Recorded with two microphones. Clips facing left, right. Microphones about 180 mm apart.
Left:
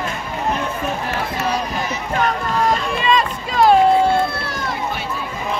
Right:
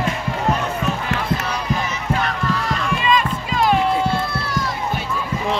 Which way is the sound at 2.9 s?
35° left (ahead or behind).